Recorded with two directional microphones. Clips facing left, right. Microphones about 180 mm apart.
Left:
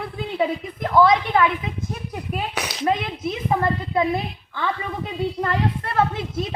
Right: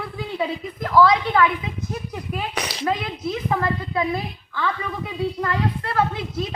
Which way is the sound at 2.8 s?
25° left (ahead or behind).